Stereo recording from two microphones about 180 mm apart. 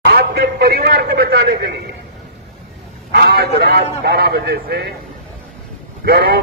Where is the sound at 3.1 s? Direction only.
60° right (ahead or behind).